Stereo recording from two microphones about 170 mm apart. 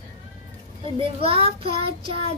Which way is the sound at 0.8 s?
35° right (ahead or behind).